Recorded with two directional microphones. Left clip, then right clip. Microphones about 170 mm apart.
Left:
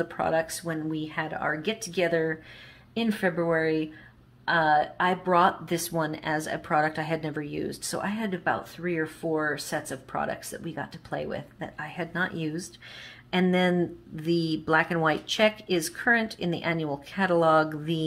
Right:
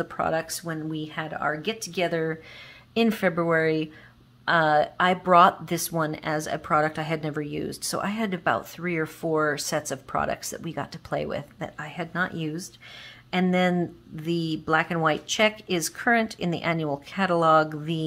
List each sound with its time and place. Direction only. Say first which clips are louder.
0.0 s speech: even; 30° right (ahead or behind)
2.9 s speech: right 4 dB; 45° right (ahead or behind); by 18.0 s 20° right (ahead or behind)